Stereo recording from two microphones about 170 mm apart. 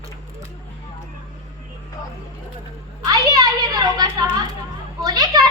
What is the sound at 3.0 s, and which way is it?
Children playing, 25° right (ahead or behind).